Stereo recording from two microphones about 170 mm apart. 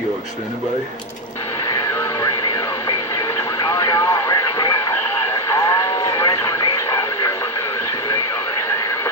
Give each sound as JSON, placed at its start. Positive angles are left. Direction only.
{"t": 3.5, "sound": "vehicle", "side_deg": 20}
{"t": 5.5, "sound": "radio", "side_deg": 20}